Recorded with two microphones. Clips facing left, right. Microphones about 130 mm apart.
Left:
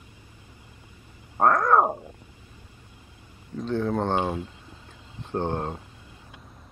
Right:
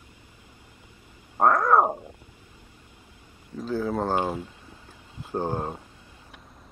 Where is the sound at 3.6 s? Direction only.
5° right (ahead or behind).